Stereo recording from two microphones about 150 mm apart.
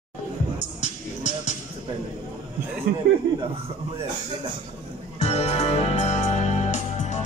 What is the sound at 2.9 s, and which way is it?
Speech, 90° right.